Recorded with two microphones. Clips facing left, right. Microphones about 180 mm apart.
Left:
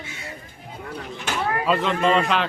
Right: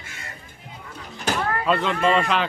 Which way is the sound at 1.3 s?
40° right (ahead or behind).